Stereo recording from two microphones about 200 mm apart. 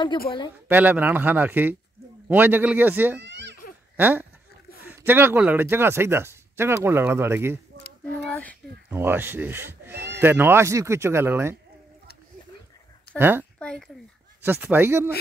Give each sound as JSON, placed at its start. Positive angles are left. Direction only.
{"t": 0.7, "sound": "speech", "side_deg": -10}
{"t": 3.2, "sound": "a sound", "side_deg": -60}
{"t": 3.9, "sound": "goat", "side_deg": -10}
{"t": 4.8, "sound": "speech", "side_deg": -10}
{"t": 8.1, "sound": "child singing", "side_deg": 5}
{"t": 8.9, "sound": "speech", "side_deg": -10}
{"t": 13.2, "sound": "speech", "side_deg": -10}
{"t": 13.6, "sound": "speech", "side_deg": 5}
{"t": 14.4, "sound": "speech", "side_deg": -10}